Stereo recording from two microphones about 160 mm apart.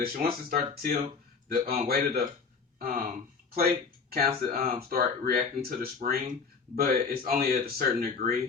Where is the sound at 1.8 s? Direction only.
70° right (ahead or behind).